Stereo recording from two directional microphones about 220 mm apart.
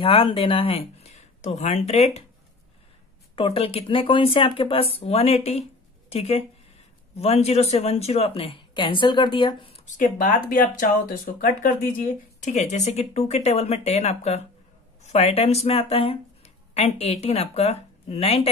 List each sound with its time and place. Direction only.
0.0 s speech: 25° left (ahead or behind)
3.3 s speech: 25° left (ahead or behind)
9.8 s speech: 35° left (ahead or behind)